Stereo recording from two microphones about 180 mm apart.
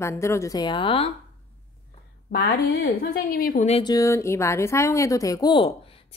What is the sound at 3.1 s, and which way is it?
Speech, 55° left (ahead or behind).